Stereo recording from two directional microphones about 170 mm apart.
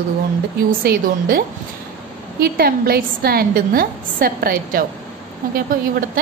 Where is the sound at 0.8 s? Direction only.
55° right (ahead or behind).